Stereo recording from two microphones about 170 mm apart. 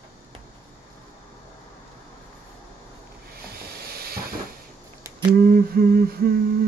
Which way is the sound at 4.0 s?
65° right (ahead or behind).